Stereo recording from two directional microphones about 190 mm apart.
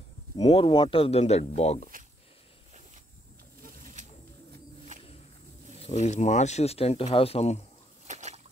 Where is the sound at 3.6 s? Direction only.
40° right (ahead or behind).